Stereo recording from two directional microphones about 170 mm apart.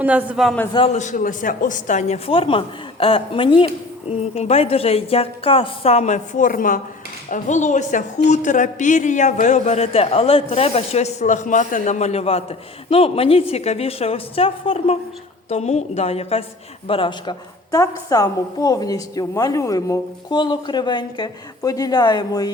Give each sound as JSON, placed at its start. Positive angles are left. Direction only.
{"t": 0.0, "sound": "a man's voice", "side_deg": -10}
{"t": 0.7, "sound": "a woman's voice", "side_deg": 30}
{"t": 0.9, "sound": "a woman's voice", "side_deg": 45}